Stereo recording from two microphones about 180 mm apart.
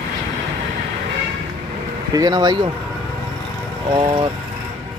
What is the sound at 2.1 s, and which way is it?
Speech, 20° right (ahead or behind).